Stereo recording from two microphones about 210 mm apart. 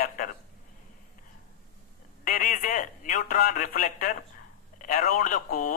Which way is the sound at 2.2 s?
40° left (ahead or behind).